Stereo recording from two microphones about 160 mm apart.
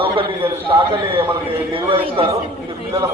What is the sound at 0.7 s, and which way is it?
A man's voice, 25° right (ahead or behind).